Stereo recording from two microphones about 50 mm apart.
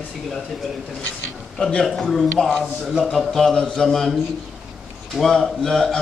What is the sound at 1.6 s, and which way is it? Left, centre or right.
Speech, centre.